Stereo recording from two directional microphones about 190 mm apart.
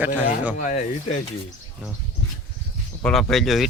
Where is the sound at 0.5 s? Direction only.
40° left (ahead or behind).